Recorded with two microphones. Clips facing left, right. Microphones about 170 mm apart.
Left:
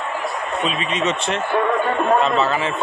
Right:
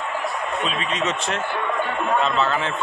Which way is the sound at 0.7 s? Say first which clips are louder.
Left 5 dB; 5° left (ahead or behind).